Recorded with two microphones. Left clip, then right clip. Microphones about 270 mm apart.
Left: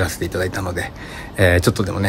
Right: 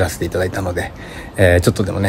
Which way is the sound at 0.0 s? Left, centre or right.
Centre.